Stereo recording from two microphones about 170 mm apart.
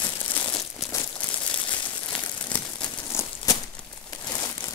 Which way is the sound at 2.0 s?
10° left (ahead or behind).